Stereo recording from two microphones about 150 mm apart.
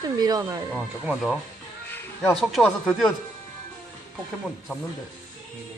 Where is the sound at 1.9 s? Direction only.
10° left (ahead or behind).